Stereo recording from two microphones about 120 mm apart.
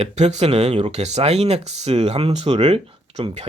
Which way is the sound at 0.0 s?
65° right (ahead or behind).